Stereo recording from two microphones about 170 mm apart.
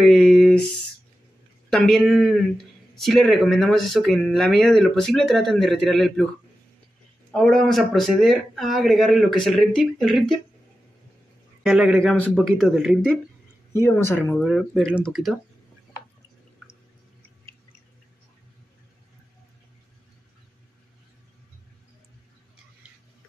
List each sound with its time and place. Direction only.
0.0 s a sound: centre (ahead or behind)
1.7 s speech: centre (ahead or behind)
7.3 s speech: 5° left (ahead or behind)
11.6 s speech: 5° right (ahead or behind)
13.7 s speech: 15° left (ahead or behind)
14.4 s speech: centre (ahead or behind)